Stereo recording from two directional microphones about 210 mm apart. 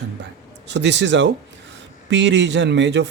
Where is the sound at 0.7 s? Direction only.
55° right (ahead or behind).